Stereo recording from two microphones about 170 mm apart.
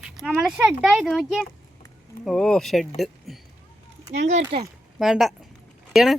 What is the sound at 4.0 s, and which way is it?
Speech, 40° right (ahead or behind).